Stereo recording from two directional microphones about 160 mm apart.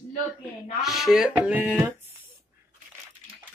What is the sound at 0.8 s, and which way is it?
Speech, centre (ahead or behind).